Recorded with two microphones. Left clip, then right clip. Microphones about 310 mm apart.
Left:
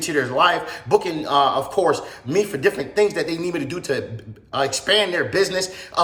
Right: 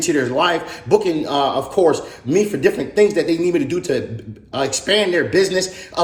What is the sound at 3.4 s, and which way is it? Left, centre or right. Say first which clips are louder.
Speech: right 7 dB; centre.